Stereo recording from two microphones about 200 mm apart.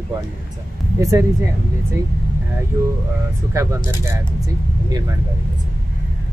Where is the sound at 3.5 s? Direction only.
15° right (ahead or behind).